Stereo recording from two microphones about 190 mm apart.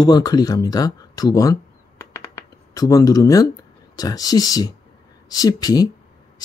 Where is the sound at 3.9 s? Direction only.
20° left (ahead or behind).